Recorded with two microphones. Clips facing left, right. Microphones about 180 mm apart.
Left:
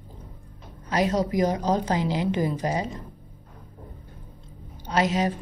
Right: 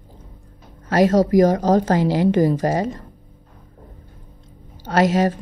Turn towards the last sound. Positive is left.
turn(degrees=-50)  # may be behind; listen again after turning